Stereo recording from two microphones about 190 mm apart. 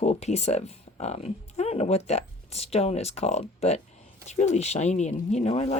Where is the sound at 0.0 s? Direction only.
35° left (ahead or behind).